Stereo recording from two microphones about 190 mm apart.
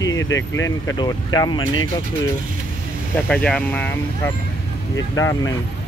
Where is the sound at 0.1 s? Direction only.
85° left.